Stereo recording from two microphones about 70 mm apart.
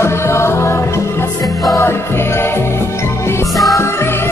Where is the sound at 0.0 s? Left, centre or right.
Left.